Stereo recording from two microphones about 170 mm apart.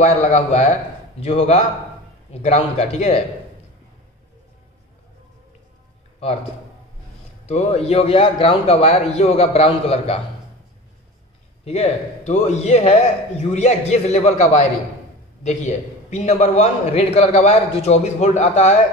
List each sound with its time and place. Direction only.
0.0 s a man's voice: 40° left (ahead or behind)
7.4 s a man's voice: 40° left (ahead or behind)
11.6 s a man's voice: 40° left (ahead or behind)